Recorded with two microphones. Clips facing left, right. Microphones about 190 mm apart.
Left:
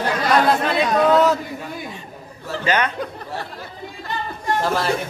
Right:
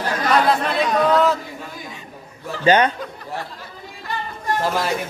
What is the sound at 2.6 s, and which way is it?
Speech, 30° right (ahead or behind).